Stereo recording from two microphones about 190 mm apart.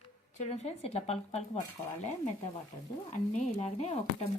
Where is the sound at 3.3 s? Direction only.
40° left (ahead or behind).